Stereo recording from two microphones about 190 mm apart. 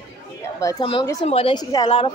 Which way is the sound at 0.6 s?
20° left (ahead or behind).